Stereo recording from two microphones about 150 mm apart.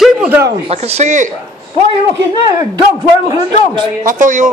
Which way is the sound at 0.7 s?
45° right (ahead or behind).